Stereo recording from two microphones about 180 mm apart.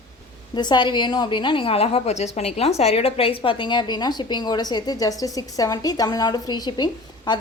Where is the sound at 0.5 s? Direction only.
25° left (ahead or behind).